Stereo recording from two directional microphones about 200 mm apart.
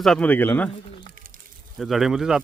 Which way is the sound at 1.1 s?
45° right (ahead or behind).